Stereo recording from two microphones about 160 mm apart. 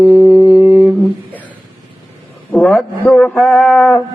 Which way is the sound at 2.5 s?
5° left (ahead or behind).